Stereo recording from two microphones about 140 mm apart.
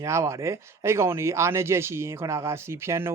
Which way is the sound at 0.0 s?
20° right (ahead or behind).